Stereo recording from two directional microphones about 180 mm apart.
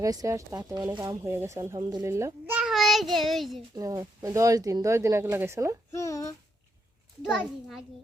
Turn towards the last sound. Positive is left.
turn(degrees=5)  # may be behind; listen again after turning